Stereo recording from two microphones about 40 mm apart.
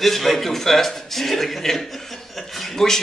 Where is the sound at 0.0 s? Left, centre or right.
Centre.